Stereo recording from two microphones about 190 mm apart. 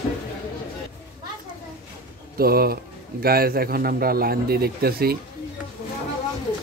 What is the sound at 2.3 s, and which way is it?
A man's voice, 50° right (ahead or behind).